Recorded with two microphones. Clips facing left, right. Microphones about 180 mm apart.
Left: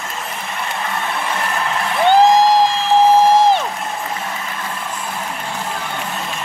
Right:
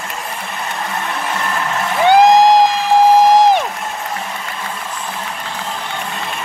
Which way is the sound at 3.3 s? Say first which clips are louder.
Right 2 dB; 15° right (ahead or behind).